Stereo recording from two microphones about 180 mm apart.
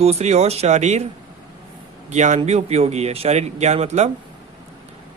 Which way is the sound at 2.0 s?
40° right (ahead or behind).